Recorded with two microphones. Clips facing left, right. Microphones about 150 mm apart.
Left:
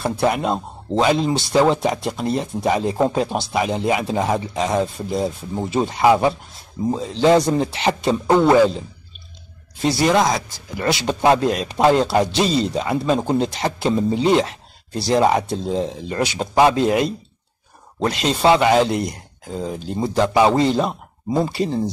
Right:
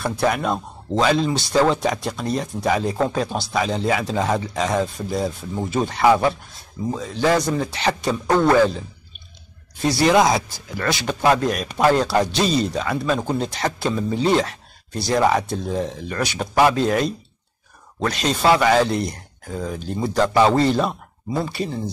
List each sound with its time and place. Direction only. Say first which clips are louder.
0.0 s a man's voice: left 2 dB; 20° left (ahead or behind)
10.0 s speech: right 2 dB; 5° right (ahead or behind)
10.8 s a man's voice: left 2 dB; 25° left (ahead or behind)
21.5 s speech: left 5 dB; 35° left (ahead or behind)